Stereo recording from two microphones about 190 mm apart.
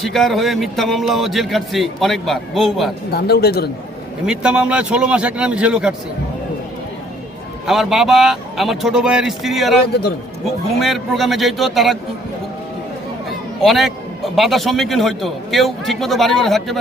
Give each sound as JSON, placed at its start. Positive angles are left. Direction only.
{"t": 0.0, "sound": "a man's voice", "side_deg": 0}
{"t": 3.1, "sound": "speech", "side_deg": 55}
{"t": 4.3, "sound": "a man's voice", "side_deg": -5}
{"t": 7.7, "sound": "a man's voice", "side_deg": 0}
{"t": 9.8, "sound": "speech", "side_deg": 60}
{"t": 10.8, "sound": "a man's voice", "side_deg": 0}
{"t": 13.6, "sound": "a man's voice", "side_deg": 0}